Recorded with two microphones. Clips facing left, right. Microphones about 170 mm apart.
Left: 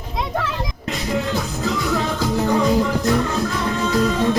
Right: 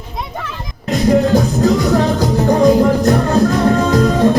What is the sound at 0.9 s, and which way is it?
Music, 40° right (ahead or behind).